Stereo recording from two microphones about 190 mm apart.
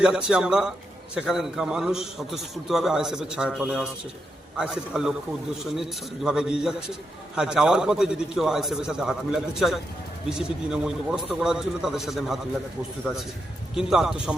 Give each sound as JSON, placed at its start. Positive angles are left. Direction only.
{"t": 0.0, "sound": "a man's voice", "side_deg": -5}
{"t": 13.7, "sound": "a man's voice", "side_deg": -5}